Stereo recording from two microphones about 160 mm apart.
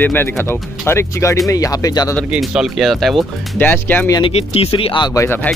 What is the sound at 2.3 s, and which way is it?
Speech, 5° right (ahead or behind).